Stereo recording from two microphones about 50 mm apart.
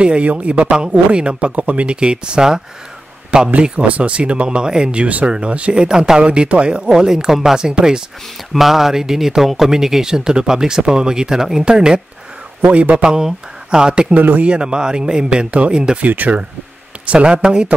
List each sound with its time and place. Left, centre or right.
0.0 s a man's voice: right
12.6 s speech: right
13.1 s speech: centre
14.1 s a man's voice: right
14.5 s speech: centre
16.0 s a man's voice: right
17.0 s speech: right